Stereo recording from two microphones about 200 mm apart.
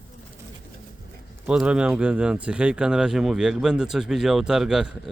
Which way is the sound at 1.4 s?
5° right (ahead or behind).